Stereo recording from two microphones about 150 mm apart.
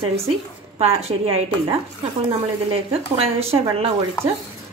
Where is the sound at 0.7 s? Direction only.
45° right (ahead or behind).